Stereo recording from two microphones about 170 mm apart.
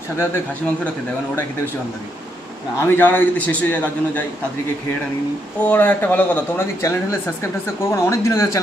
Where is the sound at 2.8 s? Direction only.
10° left (ahead or behind).